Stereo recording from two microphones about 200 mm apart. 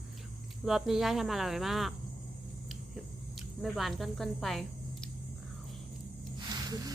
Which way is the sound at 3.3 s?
Centre (ahead or behind).